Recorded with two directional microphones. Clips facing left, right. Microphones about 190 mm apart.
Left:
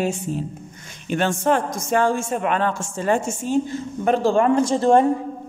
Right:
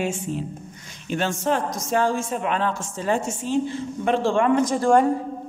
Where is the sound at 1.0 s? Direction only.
55° left (ahead or behind); by 5.0 s 25° left (ahead or behind).